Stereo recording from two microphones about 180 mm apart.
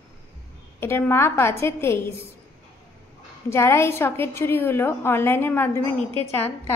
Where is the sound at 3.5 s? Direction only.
15° left (ahead or behind).